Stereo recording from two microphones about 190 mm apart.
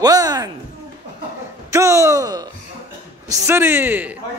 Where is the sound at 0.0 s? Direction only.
20° right (ahead or behind).